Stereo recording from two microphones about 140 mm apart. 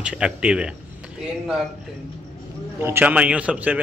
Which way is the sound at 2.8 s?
15° right (ahead or behind).